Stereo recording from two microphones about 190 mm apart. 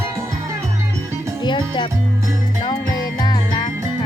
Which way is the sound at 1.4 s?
25° left (ahead or behind).